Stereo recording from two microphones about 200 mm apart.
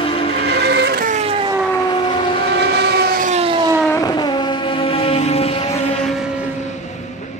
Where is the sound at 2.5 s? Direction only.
60° right (ahead or behind); by 3.7 s 25° right (ahead or behind).